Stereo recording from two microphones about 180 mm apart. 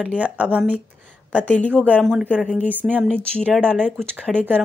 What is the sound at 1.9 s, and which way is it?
Speech, 10° right (ahead or behind).